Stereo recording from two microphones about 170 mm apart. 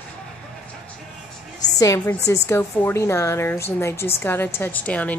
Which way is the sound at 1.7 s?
15° left (ahead or behind).